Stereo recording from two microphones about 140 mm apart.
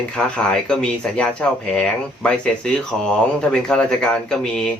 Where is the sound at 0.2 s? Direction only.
5° left (ahead or behind).